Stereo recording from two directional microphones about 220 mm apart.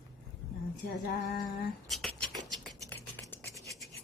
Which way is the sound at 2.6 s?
10° left (ahead or behind).